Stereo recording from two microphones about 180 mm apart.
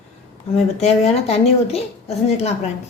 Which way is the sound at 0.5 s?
40° left (ahead or behind).